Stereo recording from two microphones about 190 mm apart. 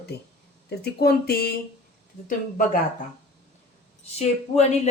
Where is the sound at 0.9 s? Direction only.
55° left (ahead or behind).